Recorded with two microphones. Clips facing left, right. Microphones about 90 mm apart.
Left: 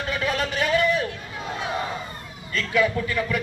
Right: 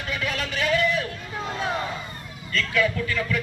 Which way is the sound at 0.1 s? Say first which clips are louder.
Left 3 dB; 35° left (ahead or behind).